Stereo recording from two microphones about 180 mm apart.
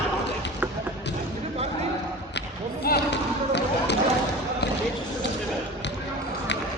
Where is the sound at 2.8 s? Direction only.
65° left (ahead or behind).